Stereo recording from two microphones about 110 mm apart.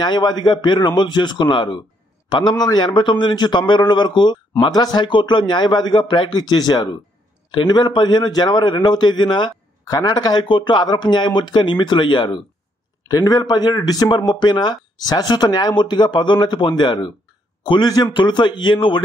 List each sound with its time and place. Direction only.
0.0 s a man's voice: 40° left (ahead or behind)